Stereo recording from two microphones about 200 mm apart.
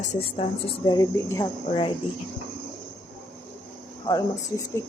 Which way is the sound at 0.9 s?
15° left (ahead or behind).